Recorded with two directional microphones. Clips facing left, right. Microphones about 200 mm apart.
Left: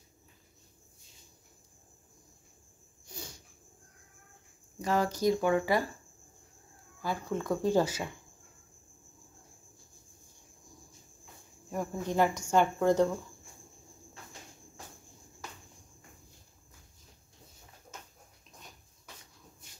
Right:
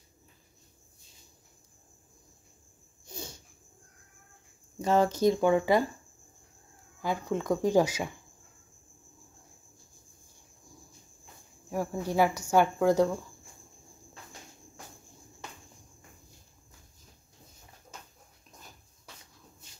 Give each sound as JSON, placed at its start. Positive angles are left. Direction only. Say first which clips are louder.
{"t": 4.8, "sound": "speech", "louder": "right 4 dB", "side_deg": -25}
{"t": 7.0, "sound": "speech", "louder": "right 3 dB", "side_deg": -15}
{"t": 11.7, "sound": "speech", "louder": "right 2 dB", "side_deg": -10}